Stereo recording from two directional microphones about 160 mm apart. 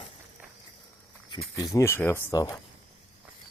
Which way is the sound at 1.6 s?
20° left (ahead or behind).